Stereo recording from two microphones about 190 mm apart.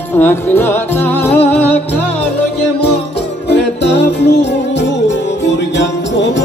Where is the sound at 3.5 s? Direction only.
65° left (ahead or behind).